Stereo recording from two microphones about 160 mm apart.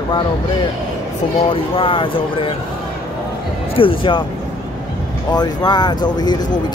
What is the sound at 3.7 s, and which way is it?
Speech, 30° left (ahead or behind).